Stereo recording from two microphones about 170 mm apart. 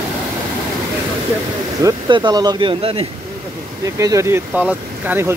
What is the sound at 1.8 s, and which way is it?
Speech, 25° right (ahead or behind).